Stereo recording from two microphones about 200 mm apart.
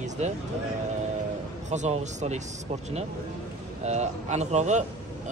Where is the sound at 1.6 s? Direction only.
35° right (ahead or behind).